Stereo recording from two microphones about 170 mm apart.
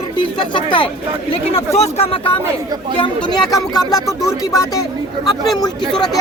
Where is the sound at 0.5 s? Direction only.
30° left (ahead or behind).